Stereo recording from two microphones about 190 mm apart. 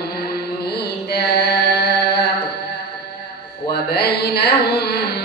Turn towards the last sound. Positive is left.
turn(degrees=60)  # may be behind; listen again after turning